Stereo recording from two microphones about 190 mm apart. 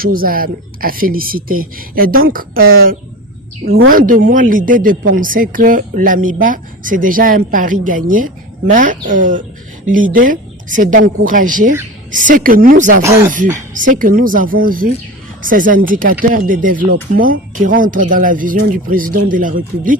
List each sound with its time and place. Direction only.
0.0 s speech: 50° right (ahead or behind)
13.0 s speech: 15° right (ahead or behind)
13.7 s speech: 45° right (ahead or behind)